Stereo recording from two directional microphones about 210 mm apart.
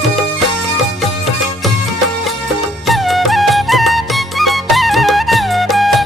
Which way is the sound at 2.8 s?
Centre (ahead or behind).